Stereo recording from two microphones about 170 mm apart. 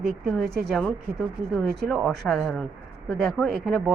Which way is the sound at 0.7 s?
Centre (ahead or behind).